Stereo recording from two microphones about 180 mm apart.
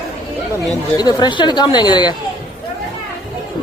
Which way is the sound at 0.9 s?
20° left (ahead or behind).